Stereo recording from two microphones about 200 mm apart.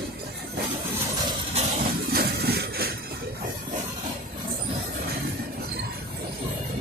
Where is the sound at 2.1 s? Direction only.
50° right (ahead or behind).